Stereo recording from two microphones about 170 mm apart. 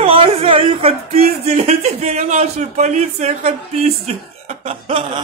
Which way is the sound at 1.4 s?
40° right (ahead or behind).